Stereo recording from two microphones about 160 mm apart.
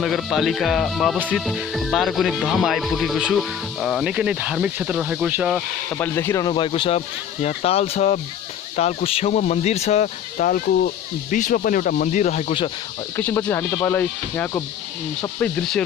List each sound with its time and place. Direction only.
0.0 s speech: centre (ahead or behind)
5.9 s speech: 15° left (ahead or behind)
6.5 s speech: 30° left (ahead or behind); by 12.5 s 45° left (ahead or behind)
13.2 s speech: 10° left (ahead or behind)